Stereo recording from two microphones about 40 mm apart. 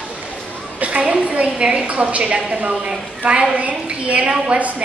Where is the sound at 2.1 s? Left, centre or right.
Right.